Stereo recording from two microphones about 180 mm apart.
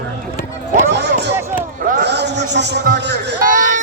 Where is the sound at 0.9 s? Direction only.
70° right (ahead or behind).